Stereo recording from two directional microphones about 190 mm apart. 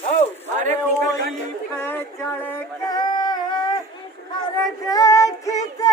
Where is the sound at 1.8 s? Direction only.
10° left (ahead or behind).